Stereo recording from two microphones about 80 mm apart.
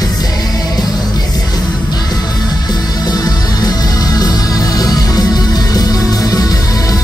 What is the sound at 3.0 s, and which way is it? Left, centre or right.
Music, left.